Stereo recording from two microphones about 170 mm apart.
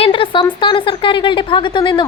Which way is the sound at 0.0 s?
30° left (ahead or behind).